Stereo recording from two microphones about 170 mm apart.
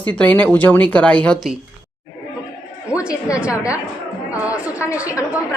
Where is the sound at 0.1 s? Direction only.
10° left (ahead or behind).